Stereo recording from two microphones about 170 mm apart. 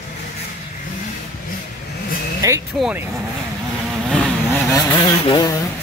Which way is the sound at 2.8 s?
10° right (ahead or behind).